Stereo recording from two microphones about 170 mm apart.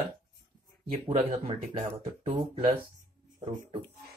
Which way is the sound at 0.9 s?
35° right (ahead or behind).